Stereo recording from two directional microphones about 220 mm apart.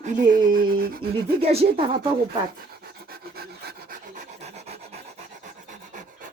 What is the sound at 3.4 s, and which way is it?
Dog, 45° right (ahead or behind).